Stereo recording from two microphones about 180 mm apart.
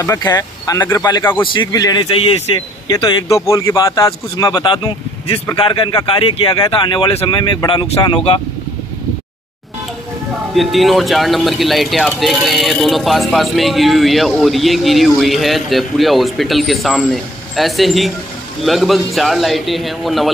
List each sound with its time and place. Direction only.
0.0 s speech: 20° left (ahead or behind)
1.4 s speech: 25° left (ahead or behind)
10.5 s speech: centre (ahead or behind)